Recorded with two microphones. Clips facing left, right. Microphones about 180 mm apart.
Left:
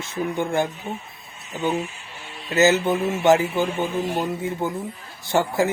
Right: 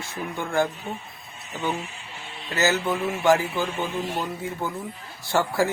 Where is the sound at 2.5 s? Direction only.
20° left (ahead or behind).